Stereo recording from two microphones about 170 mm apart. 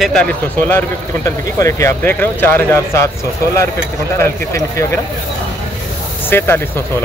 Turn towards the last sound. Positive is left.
turn(degrees=15)  # may be behind; listen again after turning